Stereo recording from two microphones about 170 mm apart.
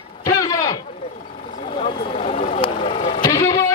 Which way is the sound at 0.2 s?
20° left (ahead or behind).